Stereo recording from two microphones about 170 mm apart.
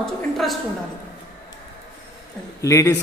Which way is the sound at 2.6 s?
20° left (ahead or behind).